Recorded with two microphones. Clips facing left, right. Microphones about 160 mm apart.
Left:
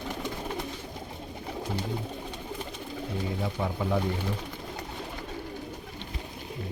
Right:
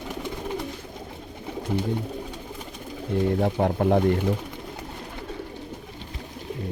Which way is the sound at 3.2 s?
60° right (ahead or behind).